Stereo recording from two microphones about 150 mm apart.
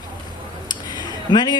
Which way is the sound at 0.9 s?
30° left (ahead or behind).